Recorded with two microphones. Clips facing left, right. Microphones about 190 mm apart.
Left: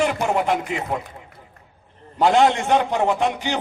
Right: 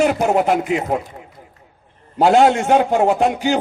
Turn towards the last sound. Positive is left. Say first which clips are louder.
# right 5 dB
turn(degrees=-45)  # may be behind; listen again after turning